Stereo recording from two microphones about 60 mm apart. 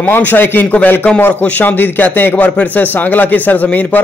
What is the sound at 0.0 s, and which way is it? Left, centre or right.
A man's voice, left.